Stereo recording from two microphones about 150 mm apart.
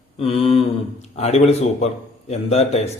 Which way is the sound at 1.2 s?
45° left (ahead or behind).